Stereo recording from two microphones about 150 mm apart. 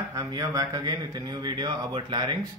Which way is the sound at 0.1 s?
20° right (ahead or behind).